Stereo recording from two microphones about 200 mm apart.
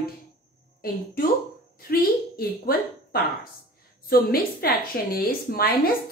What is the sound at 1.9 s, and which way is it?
A woman's voice, 50° left (ahead or behind).